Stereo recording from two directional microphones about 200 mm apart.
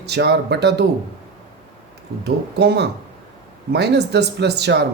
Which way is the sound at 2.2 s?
55° right (ahead or behind).